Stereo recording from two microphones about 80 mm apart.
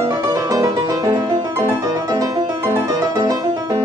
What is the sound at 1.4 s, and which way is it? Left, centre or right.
Music, right.